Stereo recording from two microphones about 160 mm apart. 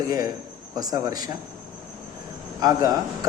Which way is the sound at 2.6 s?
25° right (ahead or behind).